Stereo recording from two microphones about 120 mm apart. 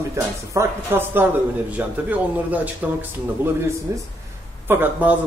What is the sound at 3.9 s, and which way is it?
Speech, 25° right (ahead or behind).